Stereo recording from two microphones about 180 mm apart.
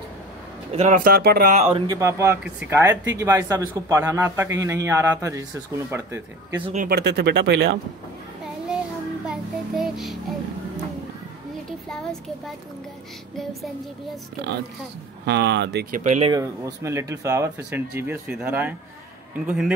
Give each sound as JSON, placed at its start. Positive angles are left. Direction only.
{"t": 0.7, "sound": "speech", "side_deg": -45}
{"t": 1.5, "sound": "speech", "side_deg": -40}
{"t": 1.9, "sound": "speech", "side_deg": -15}
{"t": 6.6, "sound": "speech", "side_deg": -40}
{"t": 6.9, "sound": "speech", "side_deg": -65}
{"t": 9.3, "sound": "child singing", "side_deg": 0}
{"t": 11.9, "sound": "speech", "side_deg": 5}
{"t": 15.2, "sound": "speech", "side_deg": -70}
{"t": 16.0, "sound": "speech", "side_deg": -45}
{"t": 16.3, "sound": "speech", "side_deg": -20}